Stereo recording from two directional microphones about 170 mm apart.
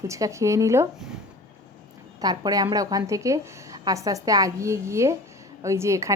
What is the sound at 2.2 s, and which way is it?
A woman's voice, 20° right (ahead or behind).